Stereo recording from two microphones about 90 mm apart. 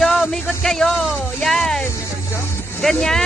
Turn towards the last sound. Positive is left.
turn(degrees=5)  # may be behind; listen again after turning